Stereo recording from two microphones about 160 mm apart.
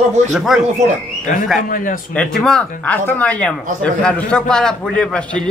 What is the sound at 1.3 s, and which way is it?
Speech, 50° left (ahead or behind).